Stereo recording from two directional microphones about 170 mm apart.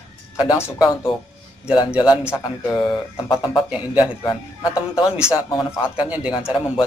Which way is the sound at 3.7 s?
10° right (ahead or behind).